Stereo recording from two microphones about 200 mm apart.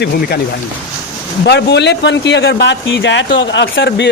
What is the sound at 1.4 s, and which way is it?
Speech, 55° left (ahead or behind).